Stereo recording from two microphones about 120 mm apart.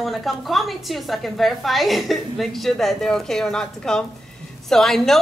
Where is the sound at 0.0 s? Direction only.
Centre (ahead or behind).